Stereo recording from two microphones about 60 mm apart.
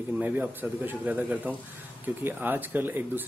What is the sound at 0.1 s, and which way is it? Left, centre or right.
Speech, right.